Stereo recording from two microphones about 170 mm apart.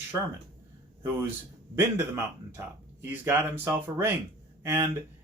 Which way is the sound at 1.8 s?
15° right (ahead or behind).